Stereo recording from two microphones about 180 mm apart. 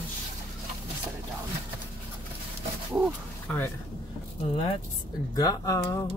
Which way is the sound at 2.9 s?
10° right (ahead or behind).